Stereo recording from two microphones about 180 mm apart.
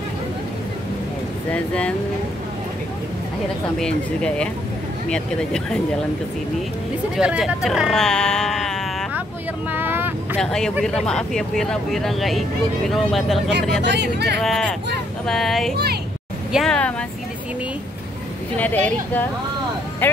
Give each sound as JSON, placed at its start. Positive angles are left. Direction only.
{"t": 1.5, "sound": "speech", "side_deg": 5}
{"t": 3.8, "sound": "speech", "side_deg": 5}
{"t": 7.2, "sound": "speech", "side_deg": -5}
{"t": 9.7, "sound": "vehicle", "side_deg": -10}
{"t": 10.3, "sound": "speech", "side_deg": 5}
{"t": 13.8, "sound": "speech", "side_deg": -65}
{"t": 14.4, "sound": "speech", "side_deg": 5}
{"t": 15.7, "sound": "speech", "side_deg": -60}
{"t": 16.5, "sound": "speech", "side_deg": 5}
{"t": 18.6, "sound": "speech", "side_deg": 10}